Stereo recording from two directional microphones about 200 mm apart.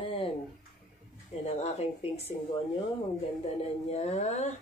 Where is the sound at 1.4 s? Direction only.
30° left (ahead or behind).